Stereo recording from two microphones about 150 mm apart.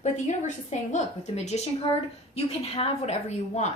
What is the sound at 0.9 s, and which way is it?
A woman's voice, 50° left (ahead or behind).